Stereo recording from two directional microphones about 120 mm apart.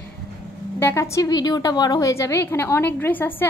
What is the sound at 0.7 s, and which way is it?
A woman's voice, 20° left (ahead or behind).